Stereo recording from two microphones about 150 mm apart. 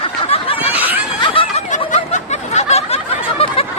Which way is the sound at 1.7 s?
50° left (ahead or behind).